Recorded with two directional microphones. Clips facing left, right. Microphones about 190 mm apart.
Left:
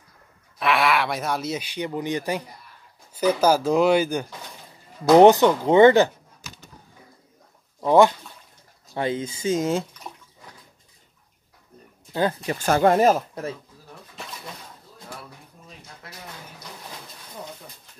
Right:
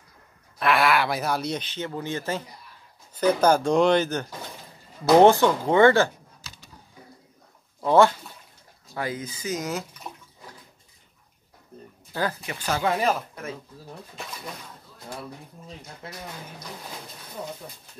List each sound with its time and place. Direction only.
0.6 s speech: centre (ahead or behind); by 6.1 s 20° left (ahead or behind)
7.8 s speech: 15° left (ahead or behind)
8.9 s speech: 25° left (ahead or behind)
12.1 s speech: 25° left (ahead or behind)
12.4 s speech: 45° left (ahead or behind)
16.0 s speech: 25° right (ahead or behind)